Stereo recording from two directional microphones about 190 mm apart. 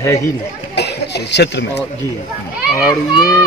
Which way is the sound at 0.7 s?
60° left (ahead or behind).